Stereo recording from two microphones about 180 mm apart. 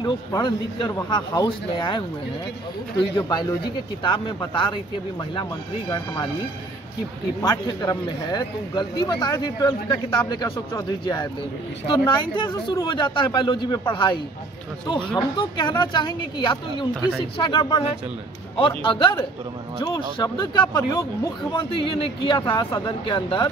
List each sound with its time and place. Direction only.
0.0 s a man's voice: 20° left (ahead or behind)
3.2 s a man's voice: 20° left (ahead or behind)
7.4 s a man's voice: 20° left (ahead or behind)
15.1 s a man's voice: 25° left (ahead or behind)
18.9 s a man's voice: 25° left (ahead or behind)